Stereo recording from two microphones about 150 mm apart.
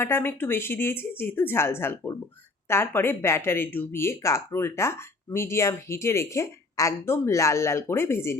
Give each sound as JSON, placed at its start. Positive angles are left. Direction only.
{"t": 0.0, "sound": "speech", "side_deg": 15}